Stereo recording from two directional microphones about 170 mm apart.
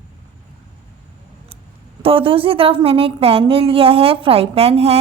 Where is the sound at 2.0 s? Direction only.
35° right (ahead or behind).